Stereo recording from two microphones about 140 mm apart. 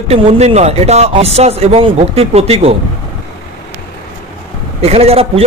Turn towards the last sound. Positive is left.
turn(degrees=-45)  # may be behind; listen again after turning